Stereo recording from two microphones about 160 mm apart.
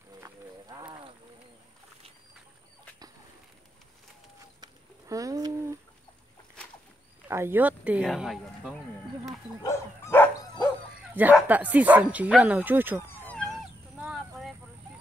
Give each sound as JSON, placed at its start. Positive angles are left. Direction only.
{"t": 0.2, "sound": "run", "side_deg": -25}
{"t": 4.6, "sound": "a sound", "side_deg": -20}
{"t": 7.2, "sound": "speech", "side_deg": -15}
{"t": 9.6, "sound": "dog", "side_deg": 20}
{"t": 11.1, "sound": "speech", "side_deg": -10}
{"t": 14.0, "sound": "clip-clop", "side_deg": -5}